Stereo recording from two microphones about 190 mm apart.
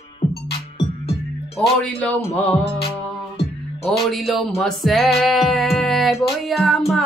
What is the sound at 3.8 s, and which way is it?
Music, centre (ahead or behind).